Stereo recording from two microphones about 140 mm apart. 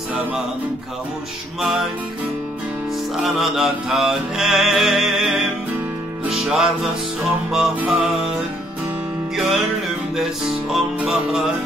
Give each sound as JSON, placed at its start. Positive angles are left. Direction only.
{"t": 1.6, "sound": "music", "side_deg": 0}
{"t": 3.2, "sound": "music", "side_deg": 0}
{"t": 10.7, "sound": "music", "side_deg": -5}